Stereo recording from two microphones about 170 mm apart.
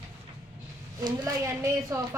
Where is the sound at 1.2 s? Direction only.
15° right (ahead or behind).